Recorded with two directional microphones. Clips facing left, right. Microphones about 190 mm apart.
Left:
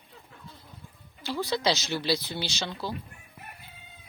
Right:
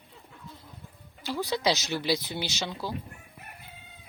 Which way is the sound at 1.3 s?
15° right (ahead or behind).